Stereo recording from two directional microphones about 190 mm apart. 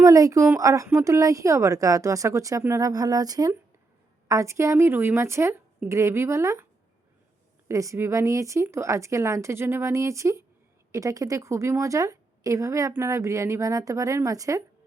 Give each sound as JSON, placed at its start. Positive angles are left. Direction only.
{"t": 0.0, "sound": "a woman's voice", "side_deg": -15}
{"t": 7.7, "sound": "a woman's voice", "side_deg": -15}